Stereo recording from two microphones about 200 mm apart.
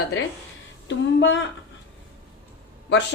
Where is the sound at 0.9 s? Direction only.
65° left (ahead or behind).